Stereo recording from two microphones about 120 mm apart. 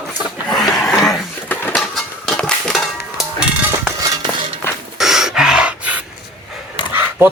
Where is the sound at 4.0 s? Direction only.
30° right (ahead or behind).